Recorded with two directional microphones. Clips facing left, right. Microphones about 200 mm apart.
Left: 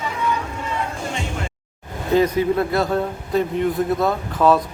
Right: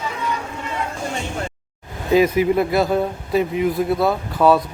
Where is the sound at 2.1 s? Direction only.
10° right (ahead or behind).